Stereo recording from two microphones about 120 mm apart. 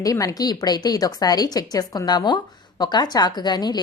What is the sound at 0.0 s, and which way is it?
A woman's voice, 30° left (ahead or behind).